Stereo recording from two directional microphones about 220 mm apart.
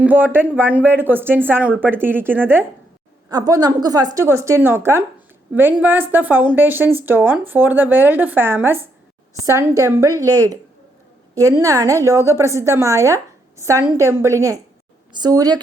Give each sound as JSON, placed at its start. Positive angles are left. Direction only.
{"t": 0.0, "sound": "a woman's voice", "side_deg": -10}